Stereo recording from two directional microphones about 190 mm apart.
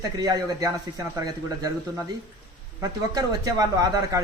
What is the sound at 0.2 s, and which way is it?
Speech, 20° right (ahead or behind).